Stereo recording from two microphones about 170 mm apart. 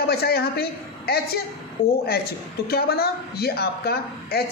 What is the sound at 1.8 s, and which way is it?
Speech, 35° left (ahead or behind).